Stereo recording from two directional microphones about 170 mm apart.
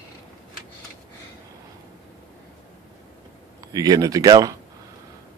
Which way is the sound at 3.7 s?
20° right (ahead or behind).